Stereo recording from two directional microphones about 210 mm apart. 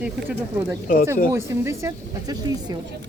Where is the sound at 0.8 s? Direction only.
45° left (ahead or behind).